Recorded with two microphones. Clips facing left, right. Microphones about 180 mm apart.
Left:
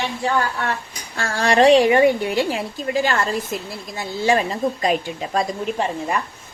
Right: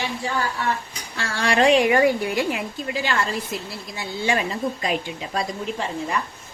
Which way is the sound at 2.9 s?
45° left (ahead or behind).